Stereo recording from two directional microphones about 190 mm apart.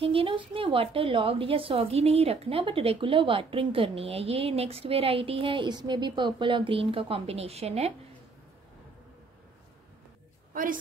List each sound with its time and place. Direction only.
0.0 s a woman's voice: 30° right (ahead or behind)
10.5 s a woman's voice: 45° right (ahead or behind)